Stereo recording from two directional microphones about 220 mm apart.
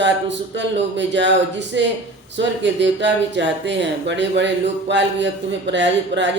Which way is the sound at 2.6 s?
55° right (ahead or behind).